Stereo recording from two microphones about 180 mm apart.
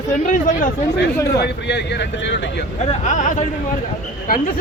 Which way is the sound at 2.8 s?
40° left (ahead or behind).